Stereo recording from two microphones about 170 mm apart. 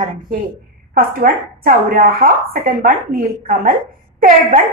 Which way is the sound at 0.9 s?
60° right (ahead or behind).